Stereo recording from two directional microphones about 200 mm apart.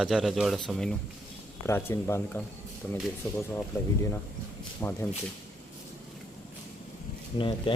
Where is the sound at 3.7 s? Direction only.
15° left (ahead or behind).